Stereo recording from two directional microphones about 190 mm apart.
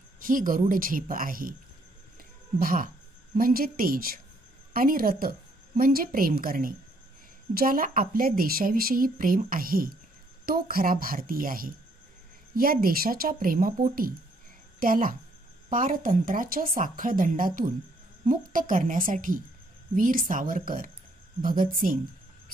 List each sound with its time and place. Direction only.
0.2 s a woman's voice: 45° right (ahead or behind)
2.6 s a woman's voice: 50° right (ahead or behind)